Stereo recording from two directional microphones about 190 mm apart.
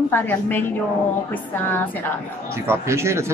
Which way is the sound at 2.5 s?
15° right (ahead or behind).